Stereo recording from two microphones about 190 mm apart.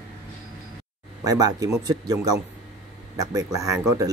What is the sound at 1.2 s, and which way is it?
Speech, 20° right (ahead or behind).